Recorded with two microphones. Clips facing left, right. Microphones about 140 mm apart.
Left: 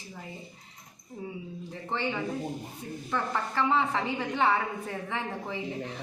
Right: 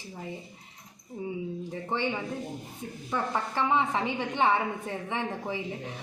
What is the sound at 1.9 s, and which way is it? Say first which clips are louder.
A woman's voice: even; 15° right (ahead or behind).